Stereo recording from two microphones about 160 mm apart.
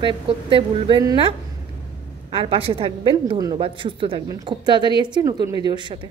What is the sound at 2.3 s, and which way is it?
A woman's voice, 35° right (ahead or behind).